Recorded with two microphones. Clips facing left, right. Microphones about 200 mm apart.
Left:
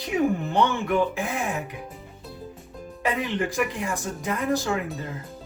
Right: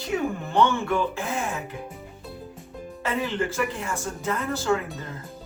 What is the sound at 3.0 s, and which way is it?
A woman's voice, 15° left (ahead or behind).